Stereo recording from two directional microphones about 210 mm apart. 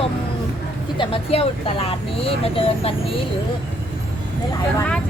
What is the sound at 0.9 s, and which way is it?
Speech, 25° left (ahead or behind).